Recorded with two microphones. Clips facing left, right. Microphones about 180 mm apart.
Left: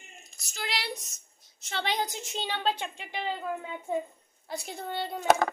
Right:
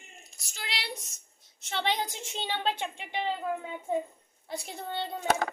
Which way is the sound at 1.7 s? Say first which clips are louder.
Even; 25° right (ahead or behind).